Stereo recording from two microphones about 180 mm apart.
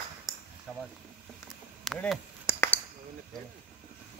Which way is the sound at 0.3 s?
Centre (ahead or behind).